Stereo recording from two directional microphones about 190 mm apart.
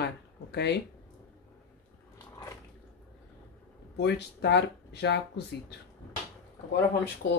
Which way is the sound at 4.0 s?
60° left (ahead or behind).